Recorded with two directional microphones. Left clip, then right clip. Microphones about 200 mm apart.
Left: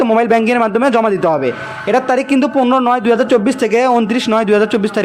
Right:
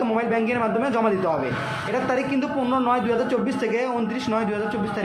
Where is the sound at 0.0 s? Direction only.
45° left (ahead or behind).